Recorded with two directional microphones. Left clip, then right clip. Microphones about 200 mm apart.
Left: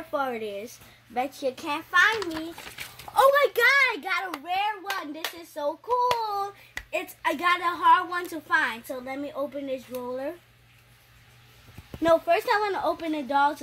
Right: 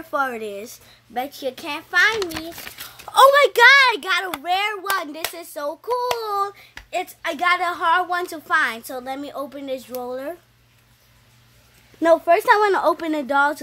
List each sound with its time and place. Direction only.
0.1 s a child's voice: 20° right (ahead or behind)
2.1 s a child's voice: 40° right (ahead or behind)
12.0 s speech: 40° right (ahead or behind)